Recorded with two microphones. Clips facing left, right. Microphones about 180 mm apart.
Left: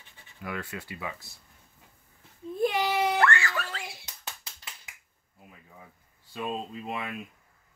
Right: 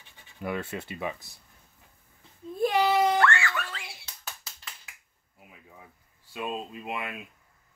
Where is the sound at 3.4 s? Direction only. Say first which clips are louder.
Even; 40° left (ahead or behind).